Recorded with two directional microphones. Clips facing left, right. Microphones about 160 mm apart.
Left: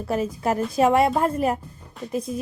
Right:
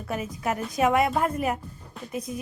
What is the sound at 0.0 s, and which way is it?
A woman's voice, 30° left (ahead or behind).